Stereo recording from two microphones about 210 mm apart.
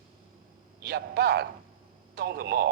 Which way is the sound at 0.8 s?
50° right (ahead or behind).